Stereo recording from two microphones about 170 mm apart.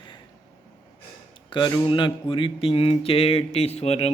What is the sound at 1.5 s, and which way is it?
Mantra, 25° left (ahead or behind).